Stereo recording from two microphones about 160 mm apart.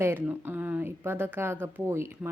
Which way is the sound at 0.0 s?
15° right (ahead or behind).